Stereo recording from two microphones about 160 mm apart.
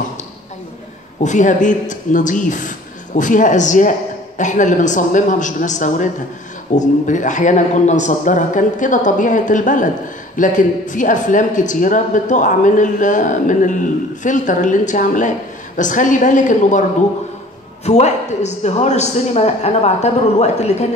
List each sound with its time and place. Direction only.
1.2 s speech: 50° left (ahead or behind)
17.8 s speech: 45° left (ahead or behind)